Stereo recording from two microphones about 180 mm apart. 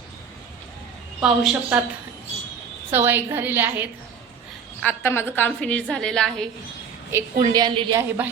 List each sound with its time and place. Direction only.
1.2 s a woman's voice: 5° right (ahead or behind)
2.9 s a woman's voice: 10° right (ahead or behind)
4.8 s a woman's voice: 10° left (ahead or behind)
7.1 s a woman's voice: 20° right (ahead or behind)
8.2 s a woman's voice: 10° right (ahead or behind)